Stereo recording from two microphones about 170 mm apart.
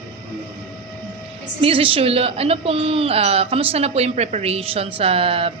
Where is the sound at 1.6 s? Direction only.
35° right (ahead or behind).